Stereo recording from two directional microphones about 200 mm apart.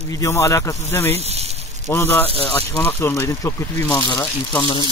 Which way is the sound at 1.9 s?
10° left (ahead or behind).